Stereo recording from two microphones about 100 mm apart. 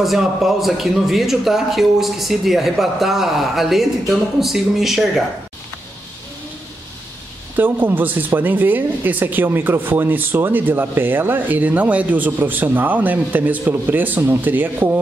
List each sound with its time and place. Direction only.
0.0 s speech: centre (ahead or behind)
7.5 s speech: 20° right (ahead or behind)